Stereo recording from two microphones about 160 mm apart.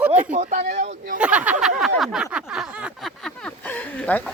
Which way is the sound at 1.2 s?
5° right (ahead or behind).